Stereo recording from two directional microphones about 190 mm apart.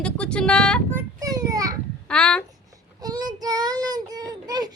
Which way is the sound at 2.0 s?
5° left (ahead or behind).